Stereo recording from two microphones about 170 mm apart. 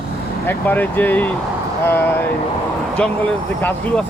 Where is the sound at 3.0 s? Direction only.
10° left (ahead or behind).